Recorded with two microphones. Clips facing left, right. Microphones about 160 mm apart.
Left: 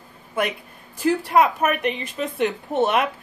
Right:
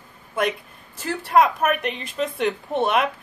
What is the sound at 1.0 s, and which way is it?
Speech, 10° left (ahead or behind).